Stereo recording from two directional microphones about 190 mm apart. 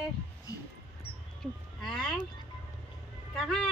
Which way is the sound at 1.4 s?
Centre (ahead or behind).